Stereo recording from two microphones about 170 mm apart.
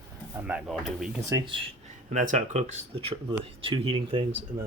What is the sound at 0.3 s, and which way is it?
Speech, 10° right (ahead or behind).